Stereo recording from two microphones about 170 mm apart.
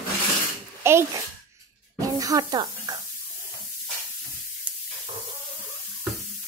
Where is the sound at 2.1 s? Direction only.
20° right (ahead or behind).